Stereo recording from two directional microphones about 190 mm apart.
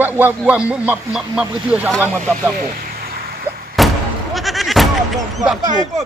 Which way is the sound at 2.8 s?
55° right (ahead or behind).